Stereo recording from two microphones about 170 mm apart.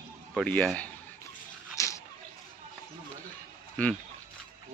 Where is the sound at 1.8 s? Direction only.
20° left (ahead or behind).